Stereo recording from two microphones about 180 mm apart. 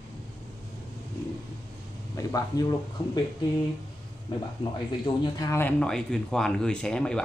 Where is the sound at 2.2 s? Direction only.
20° left (ahead or behind).